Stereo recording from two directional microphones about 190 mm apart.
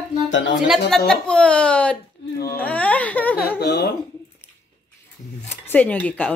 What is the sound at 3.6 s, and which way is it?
Speech, 60° left (ahead or behind).